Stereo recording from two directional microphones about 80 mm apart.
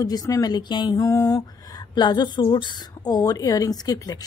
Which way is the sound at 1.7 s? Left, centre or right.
Left.